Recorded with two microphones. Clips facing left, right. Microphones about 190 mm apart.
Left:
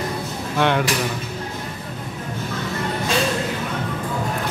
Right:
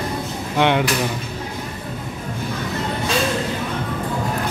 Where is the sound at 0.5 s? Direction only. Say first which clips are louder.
Right 2 dB; 20° right (ahead or behind).